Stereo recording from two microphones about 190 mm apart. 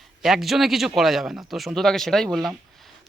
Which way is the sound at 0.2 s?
Centre (ahead or behind).